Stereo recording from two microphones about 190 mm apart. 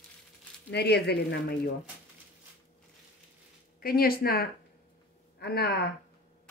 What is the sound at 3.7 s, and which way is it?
Speech, 50° left (ahead or behind).